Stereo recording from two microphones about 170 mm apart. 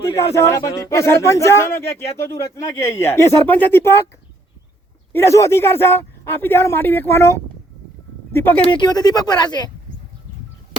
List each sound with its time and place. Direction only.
0.1 s speech: 15° left (ahead or behind)
5.1 s speech: 15° left (ahead or behind)
8.6 s speech: 30° left (ahead or behind)